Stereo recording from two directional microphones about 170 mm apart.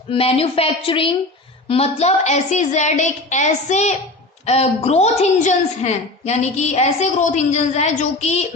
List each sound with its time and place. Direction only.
0.1 s a woman's voice: 35° left (ahead or behind)